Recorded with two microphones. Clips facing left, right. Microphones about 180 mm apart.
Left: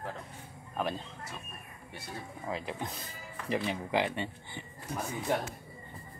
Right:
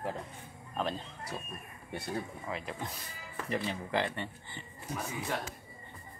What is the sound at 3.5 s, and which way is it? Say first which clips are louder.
Speech: left 2 dB; 15° left (ahead or behind).